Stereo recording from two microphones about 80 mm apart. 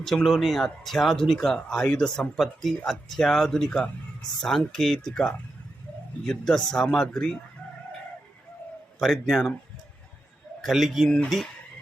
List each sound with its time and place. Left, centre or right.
0.0 s speech: centre
9.0 s speech: centre
10.6 s speech: centre